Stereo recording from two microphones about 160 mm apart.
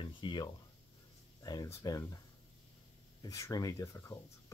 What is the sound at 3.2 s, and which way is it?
Speech, 20° left (ahead or behind).